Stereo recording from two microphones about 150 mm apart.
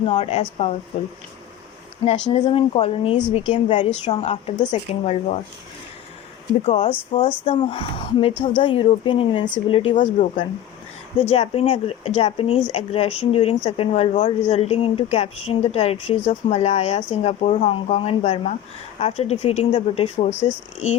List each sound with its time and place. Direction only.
0.0 s speech: 40° left (ahead or behind)
2.4 s a woman's voice: 40° left (ahead or behind)
6.7 s speech: 40° left (ahead or behind)
9.9 s speech: 60° left (ahead or behind)
11.2 s a woman's voice: 45° left (ahead or behind)